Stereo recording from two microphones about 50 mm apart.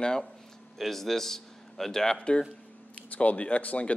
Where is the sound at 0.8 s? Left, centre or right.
Centre.